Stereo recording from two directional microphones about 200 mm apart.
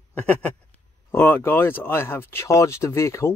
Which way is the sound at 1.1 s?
10° left (ahead or behind).